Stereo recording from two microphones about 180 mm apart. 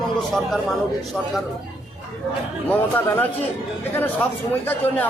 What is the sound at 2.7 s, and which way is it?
Speech, 10° left (ahead or behind).